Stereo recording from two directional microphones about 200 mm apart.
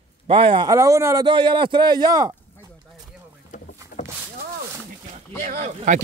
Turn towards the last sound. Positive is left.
turn(degrees=-35)  # may be behind; listen again after turning